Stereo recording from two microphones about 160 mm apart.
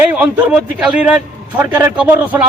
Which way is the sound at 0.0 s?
10° right (ahead or behind).